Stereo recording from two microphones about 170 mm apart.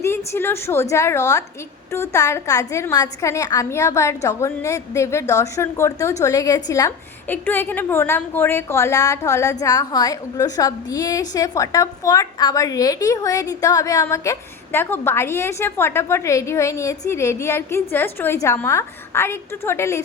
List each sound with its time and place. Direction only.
0.0 s a woman's voice: 15° left (ahead or behind)